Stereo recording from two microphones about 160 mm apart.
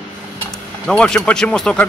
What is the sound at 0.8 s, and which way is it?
Speech, 5° left (ahead or behind).